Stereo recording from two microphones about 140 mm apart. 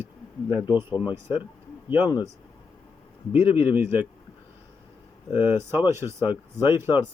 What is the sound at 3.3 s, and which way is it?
Speech, 45° left (ahead or behind).